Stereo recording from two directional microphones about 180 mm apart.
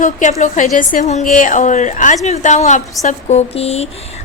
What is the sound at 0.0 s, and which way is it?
Speech, 40° left (ahead or behind).